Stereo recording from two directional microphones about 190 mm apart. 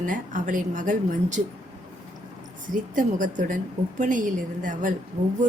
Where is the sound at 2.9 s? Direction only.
45° right (ahead or behind).